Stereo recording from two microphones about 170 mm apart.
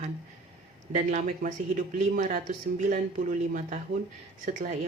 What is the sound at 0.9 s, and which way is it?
Speech, 50° right (ahead or behind).